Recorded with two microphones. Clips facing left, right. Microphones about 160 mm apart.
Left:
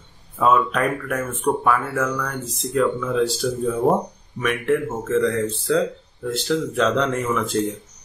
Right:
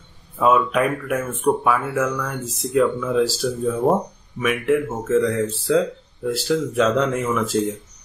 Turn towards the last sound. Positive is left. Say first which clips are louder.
# right 1 dB
turn(degrees=-10)  # may be behind; listen again after turning